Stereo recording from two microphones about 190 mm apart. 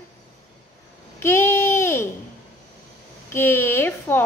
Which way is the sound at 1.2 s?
15° left (ahead or behind).